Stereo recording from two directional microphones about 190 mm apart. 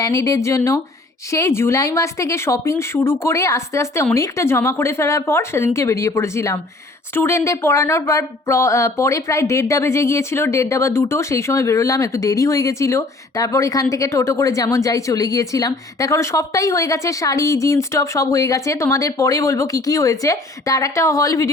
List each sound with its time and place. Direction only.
0.0 s a woman's voice: 15° left (ahead or behind)